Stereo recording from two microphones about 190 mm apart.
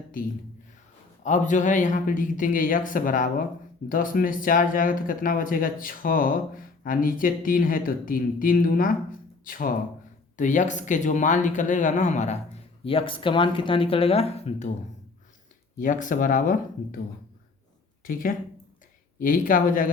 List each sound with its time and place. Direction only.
1.2 s speech: 40° left (ahead or behind)
15.8 s speech: 45° left (ahead or behind)